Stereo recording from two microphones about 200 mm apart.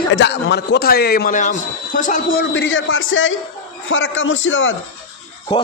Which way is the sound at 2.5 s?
70° left (ahead or behind).